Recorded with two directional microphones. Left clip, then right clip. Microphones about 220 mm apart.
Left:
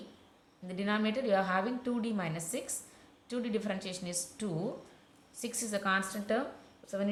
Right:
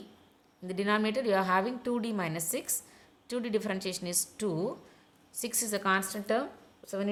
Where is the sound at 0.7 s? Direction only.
55° right (ahead or behind).